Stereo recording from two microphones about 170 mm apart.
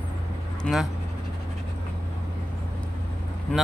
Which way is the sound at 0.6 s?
5° left (ahead or behind).